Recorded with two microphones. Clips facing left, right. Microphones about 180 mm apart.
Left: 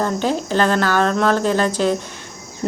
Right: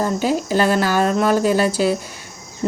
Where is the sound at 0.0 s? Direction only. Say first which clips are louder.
Right 1 dB; 10° right (ahead or behind).